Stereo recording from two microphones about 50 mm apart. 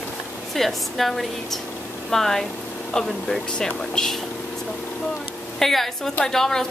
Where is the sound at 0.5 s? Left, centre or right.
Centre.